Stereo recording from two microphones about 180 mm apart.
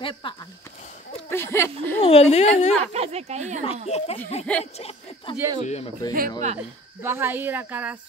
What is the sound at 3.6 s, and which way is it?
A man's voice, 35° left (ahead or behind).